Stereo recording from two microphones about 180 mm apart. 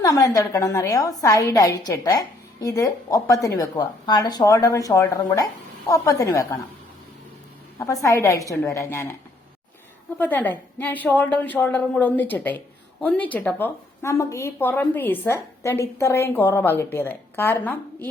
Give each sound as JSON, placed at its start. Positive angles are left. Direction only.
{"t": 0.0, "sound": "a woman's voice", "side_deg": 20}
{"t": 7.8, "sound": "a woman's voice", "side_deg": 20}
{"t": 10.2, "sound": "a woman's voice", "side_deg": 10}